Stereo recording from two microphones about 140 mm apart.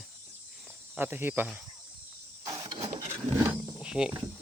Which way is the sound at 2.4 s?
25° right (ahead or behind).